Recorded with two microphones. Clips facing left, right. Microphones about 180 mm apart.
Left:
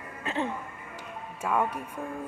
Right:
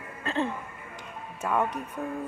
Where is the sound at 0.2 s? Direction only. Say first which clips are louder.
Right 2 dB; 15° left (ahead or behind).